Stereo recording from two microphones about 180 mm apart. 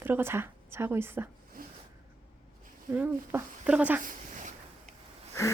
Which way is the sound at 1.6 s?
50° right (ahead or behind).